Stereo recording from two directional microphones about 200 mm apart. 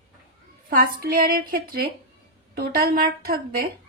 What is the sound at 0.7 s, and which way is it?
A woman's voice, 45° right (ahead or behind).